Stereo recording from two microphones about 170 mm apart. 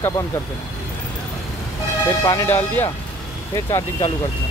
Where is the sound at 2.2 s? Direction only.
15° left (ahead or behind).